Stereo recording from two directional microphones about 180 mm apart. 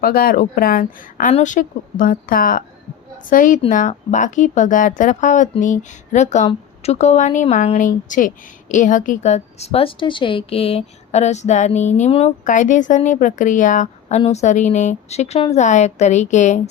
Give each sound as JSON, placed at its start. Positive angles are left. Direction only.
{"t": 0.0, "sound": "a woman's voice", "side_deg": 55}